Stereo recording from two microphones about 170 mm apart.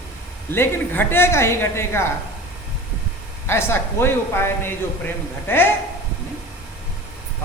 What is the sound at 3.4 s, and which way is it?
A woman's voice, 15° left (ahead or behind).